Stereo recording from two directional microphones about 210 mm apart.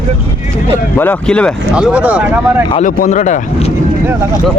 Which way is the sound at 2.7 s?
40° left (ahead or behind).